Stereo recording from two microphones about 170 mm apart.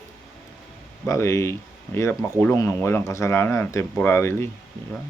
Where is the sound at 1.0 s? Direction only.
15° left (ahead or behind).